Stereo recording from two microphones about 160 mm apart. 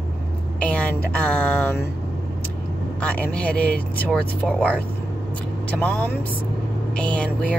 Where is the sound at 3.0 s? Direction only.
10° left (ahead or behind).